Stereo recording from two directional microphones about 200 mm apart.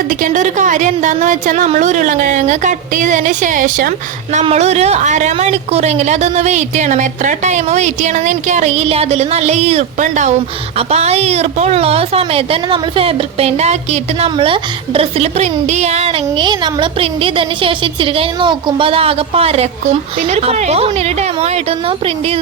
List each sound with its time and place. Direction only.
0.1 s a woman's voice: 40° right (ahead or behind)